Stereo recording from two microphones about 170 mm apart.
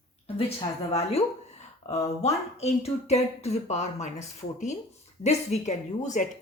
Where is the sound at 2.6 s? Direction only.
40° left (ahead or behind).